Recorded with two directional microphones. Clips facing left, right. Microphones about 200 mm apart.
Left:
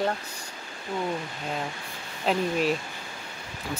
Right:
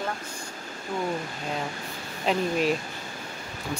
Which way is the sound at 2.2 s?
Centre (ahead or behind).